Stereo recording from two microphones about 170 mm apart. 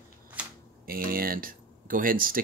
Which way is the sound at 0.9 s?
60° right (ahead or behind).